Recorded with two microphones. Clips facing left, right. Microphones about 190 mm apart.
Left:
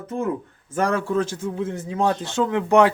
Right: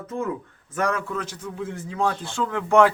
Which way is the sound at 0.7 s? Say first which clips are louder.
Left 4 dB; 30° left (ahead or behind).